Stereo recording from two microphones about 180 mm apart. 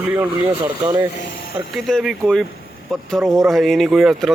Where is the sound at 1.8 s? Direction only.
Centre (ahead or behind).